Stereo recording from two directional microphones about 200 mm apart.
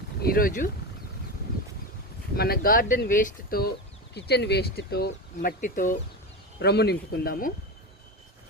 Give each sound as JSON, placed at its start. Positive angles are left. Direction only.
{"t": 0.2, "sound": "speech", "side_deg": 45}
{"t": 2.3, "sound": "speech", "side_deg": 50}
{"t": 4.1, "sound": "speech", "side_deg": 55}
{"t": 6.6, "sound": "speech", "side_deg": 55}